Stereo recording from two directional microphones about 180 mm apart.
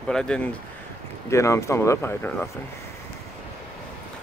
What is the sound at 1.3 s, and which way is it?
Speech, 15° left (ahead or behind).